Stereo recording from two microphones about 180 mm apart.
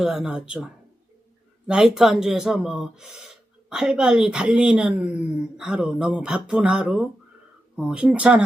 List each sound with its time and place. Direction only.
0.0 s speech: 5° right (ahead or behind)